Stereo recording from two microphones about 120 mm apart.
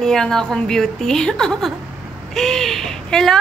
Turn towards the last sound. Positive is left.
turn(degrees=5)  # may be behind; listen again after turning